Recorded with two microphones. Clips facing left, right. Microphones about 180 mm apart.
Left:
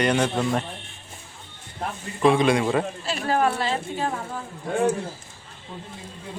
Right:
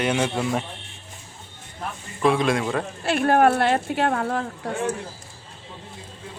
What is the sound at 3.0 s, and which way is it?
Speech, 60° right (ahead or behind).